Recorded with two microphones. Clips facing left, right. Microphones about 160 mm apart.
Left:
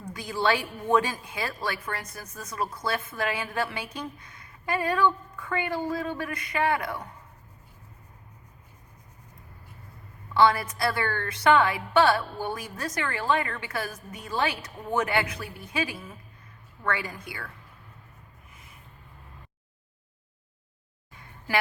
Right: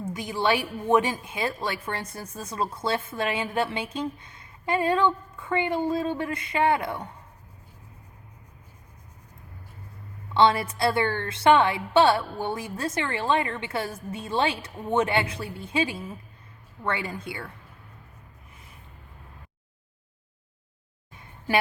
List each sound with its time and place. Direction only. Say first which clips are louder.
0.0 s a woman's voice: right 1 dB; 20° right (ahead or behind)
10.3 s a woman's voice: right 1 dB; 25° right (ahead or behind)
21.2 s a sound: right 3 dB; 20° right (ahead or behind)